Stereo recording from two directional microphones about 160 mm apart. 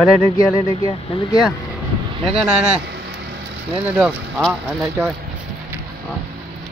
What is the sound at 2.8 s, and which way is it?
Vehicle, 90° right.